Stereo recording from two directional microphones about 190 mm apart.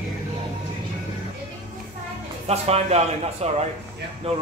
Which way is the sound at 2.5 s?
35° right (ahead or behind).